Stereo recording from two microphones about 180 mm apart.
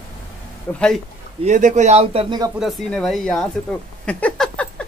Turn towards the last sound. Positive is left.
turn(degrees=5)  # may be behind; listen again after turning